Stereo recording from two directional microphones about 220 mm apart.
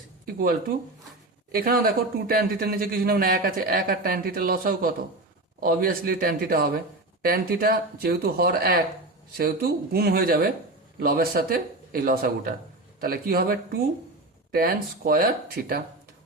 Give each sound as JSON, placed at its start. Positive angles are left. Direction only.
{"t": 0.3, "sound": "speech", "side_deg": -40}
{"t": 1.5, "sound": "a man's voice", "side_deg": -45}